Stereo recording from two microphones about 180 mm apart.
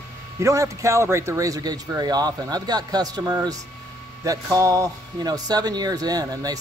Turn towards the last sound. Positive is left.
turn(degrees=-20)  # may be behind; listen again after turning